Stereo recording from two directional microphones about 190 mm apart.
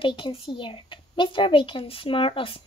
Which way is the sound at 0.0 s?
30° left (ahead or behind).